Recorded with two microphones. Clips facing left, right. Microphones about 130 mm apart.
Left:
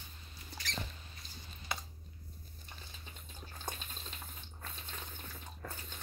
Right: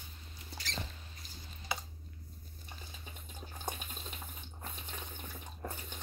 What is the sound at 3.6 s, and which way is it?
Water, 15° right (ahead or behind).